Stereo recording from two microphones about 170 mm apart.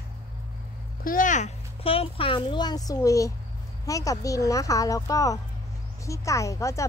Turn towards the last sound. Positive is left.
turn(degrees=20)  # may be behind; listen again after turning